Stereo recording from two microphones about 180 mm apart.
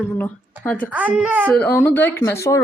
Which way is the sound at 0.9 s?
10° right (ahead or behind).